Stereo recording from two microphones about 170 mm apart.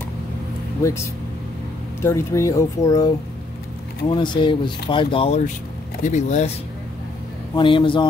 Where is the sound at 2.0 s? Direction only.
15° left (ahead or behind).